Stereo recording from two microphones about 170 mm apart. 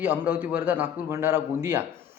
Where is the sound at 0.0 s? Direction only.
10° right (ahead or behind).